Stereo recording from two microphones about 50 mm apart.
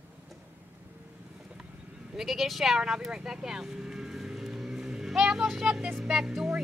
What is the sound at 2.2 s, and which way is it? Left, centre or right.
Speech, centre.